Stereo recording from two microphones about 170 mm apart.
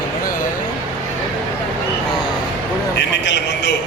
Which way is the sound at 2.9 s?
90° left.